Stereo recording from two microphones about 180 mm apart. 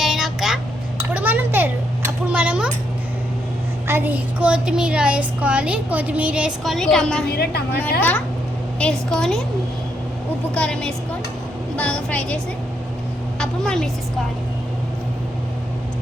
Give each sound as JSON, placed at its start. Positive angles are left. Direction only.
{"t": 0.0, "sound": "vehicle", "side_deg": 0}
{"t": 1.1, "sound": "a sound", "side_deg": -10}
{"t": 3.8, "sound": "speech", "side_deg": -10}
{"t": 7.3, "sound": "a woman's voice", "side_deg": 60}
{"t": 8.8, "sound": "a woman's voice", "side_deg": 5}
{"t": 10.5, "sound": "a woman's voice", "side_deg": 5}
{"t": 13.4, "sound": "a woman's voice", "side_deg": 5}